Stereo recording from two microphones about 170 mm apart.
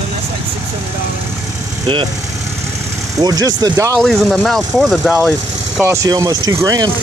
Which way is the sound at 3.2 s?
20° right (ahead or behind).